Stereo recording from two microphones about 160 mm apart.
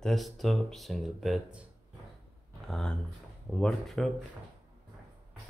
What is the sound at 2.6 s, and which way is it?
Speech, centre (ahead or behind).